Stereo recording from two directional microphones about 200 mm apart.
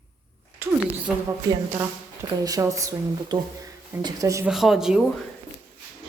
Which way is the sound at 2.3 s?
15° right (ahead or behind).